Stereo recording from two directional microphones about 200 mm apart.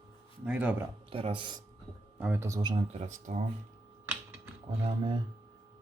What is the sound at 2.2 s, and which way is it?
Speech, 10° right (ahead or behind).